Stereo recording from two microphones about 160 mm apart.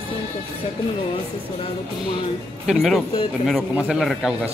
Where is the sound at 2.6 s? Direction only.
Centre (ahead or behind).